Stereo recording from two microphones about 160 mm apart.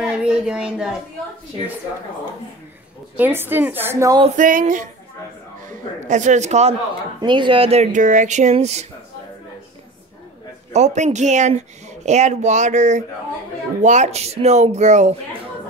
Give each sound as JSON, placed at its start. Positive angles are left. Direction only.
{"t": 0.0, "sound": "speech", "side_deg": -5}
{"t": 3.2, "sound": "a woman's voice", "side_deg": -15}
{"t": 4.4, "sound": "speech", "side_deg": -55}
{"t": 7.2, "sound": "speech", "side_deg": -30}
{"t": 10.7, "sound": "speech", "side_deg": -45}